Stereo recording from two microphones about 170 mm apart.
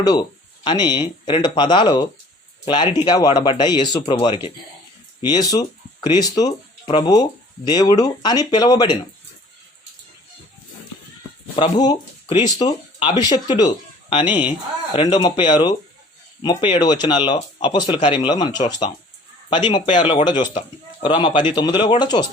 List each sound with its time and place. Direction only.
0.0 s speech: 25° left (ahead or behind)
11.5 s speech: 25° left (ahead or behind)